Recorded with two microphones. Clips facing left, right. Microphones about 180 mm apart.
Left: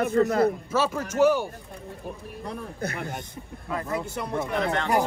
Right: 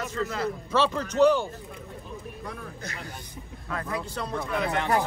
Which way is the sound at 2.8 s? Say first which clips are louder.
Left 8 dB; 55° left (ahead or behind).